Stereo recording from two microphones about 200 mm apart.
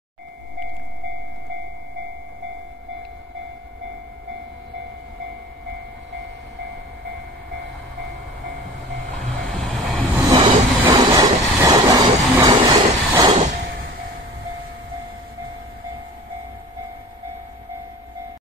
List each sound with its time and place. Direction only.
9.1 s vehicle: centre (ahead or behind)
10.3 s train: 25° right (ahead or behind)
13.4 s a sound: 35° right (ahead or behind)